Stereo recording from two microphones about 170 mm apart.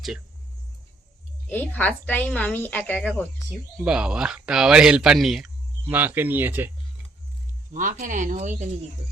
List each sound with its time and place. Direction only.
1.5 s a woman's voice: 10° left (ahead or behind)
3.8 s speech: 5° right (ahead or behind)
7.7 s speech: 50° right (ahead or behind)